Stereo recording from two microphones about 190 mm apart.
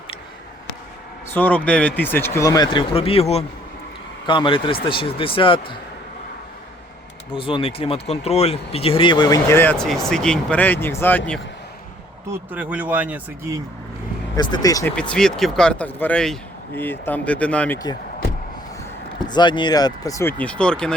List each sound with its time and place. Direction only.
1.3 s speech: 10° left (ahead or behind); by 5.7 s 25° left (ahead or behind)
7.3 s speech: 30° left (ahead or behind); by 11.2 s 10° left (ahead or behind)
12.3 s speech: 10° right (ahead or behind)
14.3 s speech: 20° left (ahead or behind)
15.1 s speech: centre (ahead or behind)
19.3 s speech: 25° left (ahead or behind); by 20.9 s 5° left (ahead or behind)